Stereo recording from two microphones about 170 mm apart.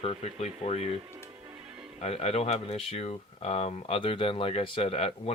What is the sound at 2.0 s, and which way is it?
Speech, 40° left (ahead or behind).